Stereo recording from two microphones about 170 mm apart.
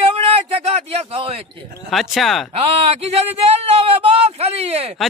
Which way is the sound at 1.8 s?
Centre (ahead or behind).